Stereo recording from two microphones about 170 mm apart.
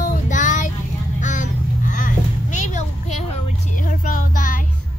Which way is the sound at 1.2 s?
45° left (ahead or behind).